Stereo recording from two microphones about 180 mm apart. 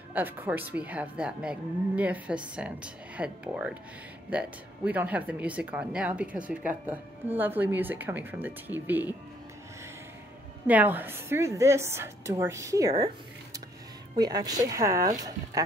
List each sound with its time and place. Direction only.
0.1 s speech: 10° right (ahead or behind)
10.7 s speech: 10° right (ahead or behind)
14.1 s speech: 20° right (ahead or behind)